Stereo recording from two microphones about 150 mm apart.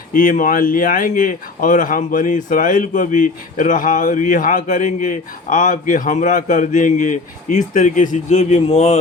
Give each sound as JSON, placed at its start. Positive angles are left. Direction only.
{"t": 0.1, "sound": "speech", "side_deg": 60}